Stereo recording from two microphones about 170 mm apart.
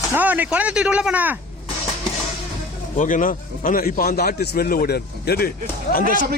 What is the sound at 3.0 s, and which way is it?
A man's voice, 50° left (ahead or behind).